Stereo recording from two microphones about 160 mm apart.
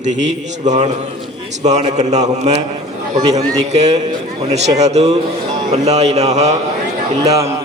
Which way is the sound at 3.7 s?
45° right (ahead or behind).